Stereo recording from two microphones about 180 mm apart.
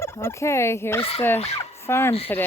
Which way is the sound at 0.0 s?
15° left (ahead or behind).